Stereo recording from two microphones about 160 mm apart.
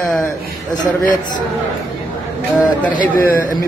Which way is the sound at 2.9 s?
60° left (ahead or behind).